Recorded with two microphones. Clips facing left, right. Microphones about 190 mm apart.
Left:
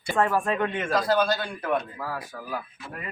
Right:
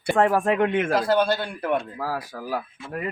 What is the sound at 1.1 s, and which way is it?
A man's voice, 30° right (ahead or behind).